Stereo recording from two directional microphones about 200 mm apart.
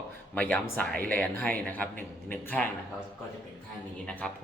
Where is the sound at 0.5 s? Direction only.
5° left (ahead or behind).